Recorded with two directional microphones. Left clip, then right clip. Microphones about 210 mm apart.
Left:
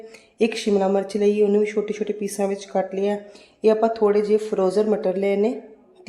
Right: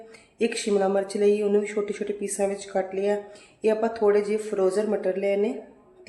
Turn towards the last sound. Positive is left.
turn(degrees=30)  # may be behind; listen again after turning